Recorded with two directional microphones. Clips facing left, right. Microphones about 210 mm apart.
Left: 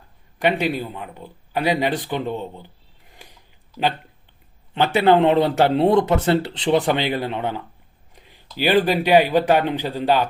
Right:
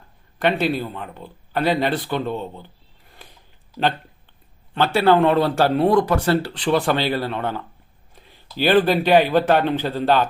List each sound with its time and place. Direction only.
0.3 s speech: 15° left (ahead or behind)
3.2 s a sound: 15° left (ahead or behind)
4.7 s speech: 20° left (ahead or behind)